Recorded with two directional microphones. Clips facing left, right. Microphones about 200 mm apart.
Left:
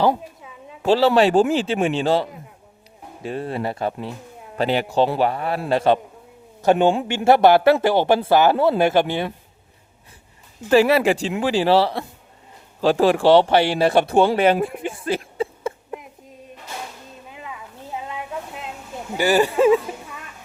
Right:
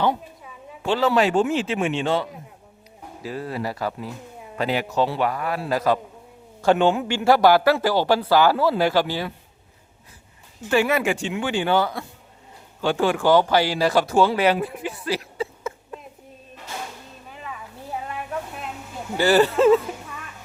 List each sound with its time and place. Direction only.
0.8 s speech: 35° left (ahead or behind)
3.2 s a man's voice: 25° left (ahead or behind)
10.7 s speech: 35° left (ahead or behind)
14.1 s speech: 55° left (ahead or behind)
19.1 s speech: 15° left (ahead or behind)